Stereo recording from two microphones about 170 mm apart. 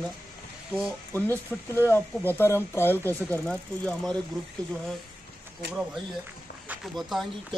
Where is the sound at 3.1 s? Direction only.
15° right (ahead or behind).